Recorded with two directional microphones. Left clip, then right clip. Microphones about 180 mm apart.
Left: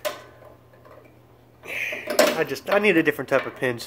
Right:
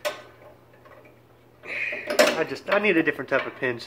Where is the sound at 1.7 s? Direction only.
35° left (ahead or behind).